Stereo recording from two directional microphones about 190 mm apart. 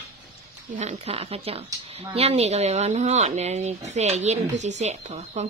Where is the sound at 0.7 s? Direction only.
35° right (ahead or behind).